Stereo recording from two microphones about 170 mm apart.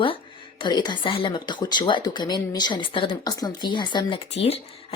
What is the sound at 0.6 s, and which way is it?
Speech, 25° left (ahead or behind).